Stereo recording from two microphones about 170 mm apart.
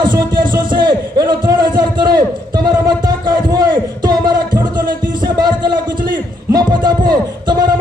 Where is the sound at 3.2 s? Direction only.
25° right (ahead or behind).